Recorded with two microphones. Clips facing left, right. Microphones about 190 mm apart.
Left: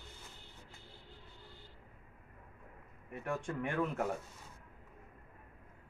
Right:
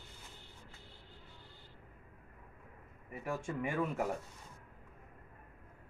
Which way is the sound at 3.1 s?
5° right (ahead or behind).